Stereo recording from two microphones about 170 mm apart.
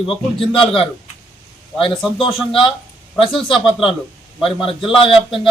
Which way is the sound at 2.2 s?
30° left (ahead or behind).